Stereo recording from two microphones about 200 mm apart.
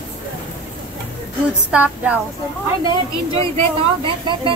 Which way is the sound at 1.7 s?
5° right (ahead or behind).